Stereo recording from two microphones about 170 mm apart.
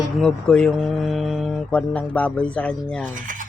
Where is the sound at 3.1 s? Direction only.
50° right (ahead or behind).